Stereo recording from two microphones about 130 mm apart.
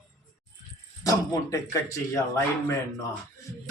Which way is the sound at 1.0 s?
25° left (ahead or behind).